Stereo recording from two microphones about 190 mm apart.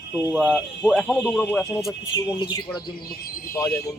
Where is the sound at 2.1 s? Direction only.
25° left (ahead or behind).